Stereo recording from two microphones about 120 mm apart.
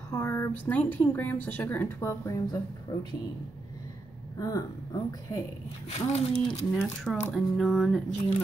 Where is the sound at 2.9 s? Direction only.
40° left (ahead or behind).